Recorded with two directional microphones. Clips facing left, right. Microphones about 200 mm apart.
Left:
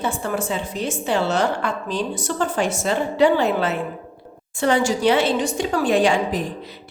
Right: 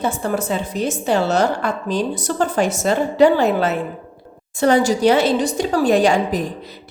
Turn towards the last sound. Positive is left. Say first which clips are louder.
# right 3 dB
turn(degrees=-40)  # may be behind; listen again after turning